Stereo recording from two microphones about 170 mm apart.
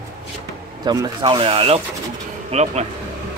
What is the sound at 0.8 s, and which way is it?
Speech, 25° right (ahead or behind).